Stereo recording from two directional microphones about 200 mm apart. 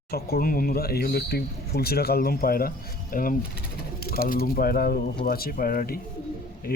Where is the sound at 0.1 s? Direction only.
50° left (ahead or behind).